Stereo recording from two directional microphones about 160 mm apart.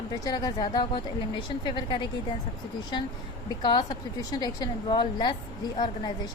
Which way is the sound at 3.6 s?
25° left (ahead or behind).